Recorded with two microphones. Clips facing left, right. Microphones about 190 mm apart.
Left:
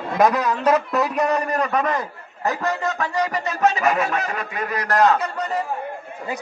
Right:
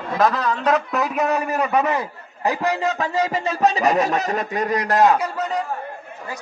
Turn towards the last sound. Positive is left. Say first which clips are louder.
# right 1 dB
turn(degrees=-10)  # may be behind; listen again after turning